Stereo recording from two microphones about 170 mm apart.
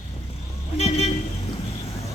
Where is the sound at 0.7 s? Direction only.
35° left (ahead or behind).